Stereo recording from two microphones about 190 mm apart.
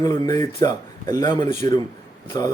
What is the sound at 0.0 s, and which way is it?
Speech, 20° left (ahead or behind).